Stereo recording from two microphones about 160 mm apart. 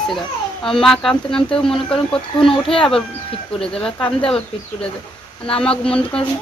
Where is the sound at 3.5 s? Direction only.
35° left (ahead or behind).